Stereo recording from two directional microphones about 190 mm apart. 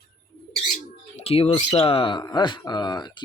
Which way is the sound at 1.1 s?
30° left (ahead or behind).